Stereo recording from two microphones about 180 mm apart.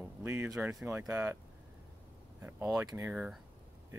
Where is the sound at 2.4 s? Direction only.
10° right (ahead or behind).